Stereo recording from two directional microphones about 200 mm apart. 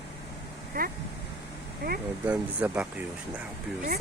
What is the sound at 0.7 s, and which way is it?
Speech, 45° right (ahead or behind).